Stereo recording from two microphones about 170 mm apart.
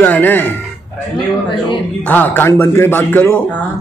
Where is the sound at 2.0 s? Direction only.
10° left (ahead or behind).